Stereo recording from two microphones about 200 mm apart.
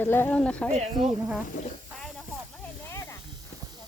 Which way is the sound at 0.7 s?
35° right (ahead or behind).